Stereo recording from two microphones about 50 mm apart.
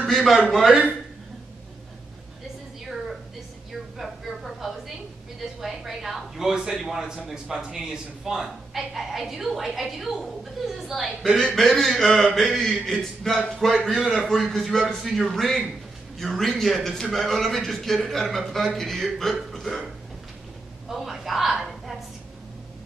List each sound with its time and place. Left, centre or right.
0.1 s a woman's voice: centre
4.0 s a sound: centre
6.8 s a woman's voice: centre
13.8 s a woman's voice: centre
20.9 s a woman's voice: centre